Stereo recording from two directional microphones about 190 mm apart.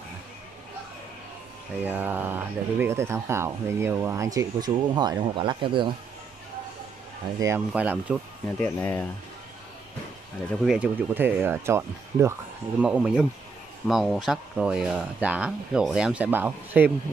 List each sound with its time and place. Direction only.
1.9 s speech: 10° right (ahead or behind); by 5.9 s 25° right (ahead or behind)
7.3 s speech: 15° right (ahead or behind)
8.5 s speech: 10° left (ahead or behind)
10.6 s speech: 5° right (ahead or behind)